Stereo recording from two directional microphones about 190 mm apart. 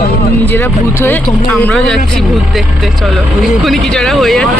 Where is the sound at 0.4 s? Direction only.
10° left (ahead or behind).